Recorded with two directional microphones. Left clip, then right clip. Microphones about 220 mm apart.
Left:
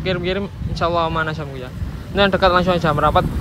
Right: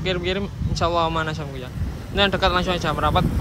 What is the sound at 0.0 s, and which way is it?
Speech, 10° right (ahead or behind).